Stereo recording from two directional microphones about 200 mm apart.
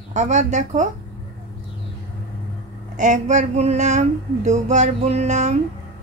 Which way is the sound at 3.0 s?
35° right (ahead or behind).